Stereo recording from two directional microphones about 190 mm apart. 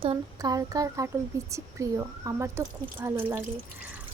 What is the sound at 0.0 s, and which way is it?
Speech, 25° right (ahead or behind).